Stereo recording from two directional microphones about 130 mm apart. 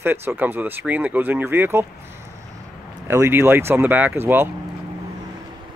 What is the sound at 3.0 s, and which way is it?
Speech, 20° right (ahead or behind).